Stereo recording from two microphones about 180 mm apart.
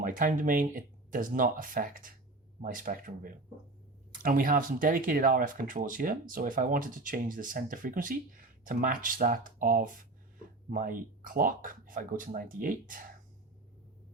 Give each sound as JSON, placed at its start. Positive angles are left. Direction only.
{"t": 0.0, "sound": "speech", "side_deg": -50}